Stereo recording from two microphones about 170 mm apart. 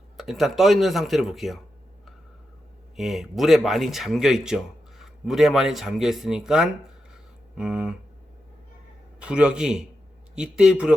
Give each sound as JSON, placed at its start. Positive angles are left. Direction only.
{"t": 0.2, "sound": "speech", "side_deg": 0}
{"t": 2.9, "sound": "speech", "side_deg": 0}
{"t": 7.1, "sound": "a sound", "side_deg": -5}
{"t": 9.2, "sound": "speech", "side_deg": -5}